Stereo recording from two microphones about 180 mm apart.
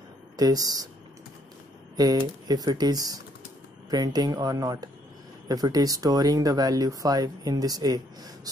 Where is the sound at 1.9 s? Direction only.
20° right (ahead or behind).